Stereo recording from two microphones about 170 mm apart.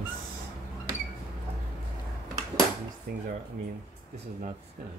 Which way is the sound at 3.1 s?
55° right (ahead or behind).